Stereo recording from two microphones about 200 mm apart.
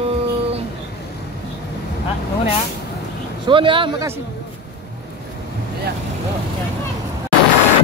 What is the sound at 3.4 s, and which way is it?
Speech, 25° right (ahead or behind).